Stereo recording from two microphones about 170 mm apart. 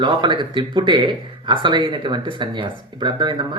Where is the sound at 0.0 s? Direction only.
30° right (ahead or behind).